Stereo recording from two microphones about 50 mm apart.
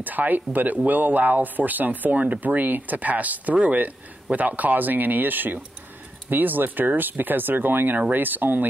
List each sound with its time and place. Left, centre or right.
0.0 s speech: right